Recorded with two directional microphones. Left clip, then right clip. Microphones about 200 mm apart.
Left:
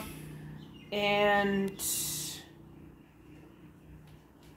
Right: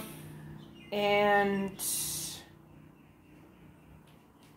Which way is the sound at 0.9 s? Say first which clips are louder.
Right 1 dB; 20° right (ahead or behind).